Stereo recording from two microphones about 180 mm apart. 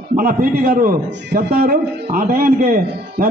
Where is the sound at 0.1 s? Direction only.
55° right (ahead or behind).